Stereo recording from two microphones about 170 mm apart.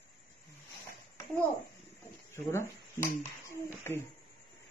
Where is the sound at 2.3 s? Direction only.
15° left (ahead or behind).